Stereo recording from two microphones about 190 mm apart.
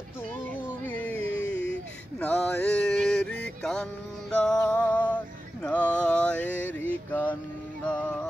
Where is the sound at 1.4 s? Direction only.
75° left (ahead or behind).